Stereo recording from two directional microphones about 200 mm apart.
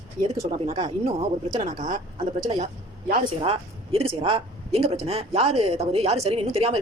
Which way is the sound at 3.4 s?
30° right (ahead or behind).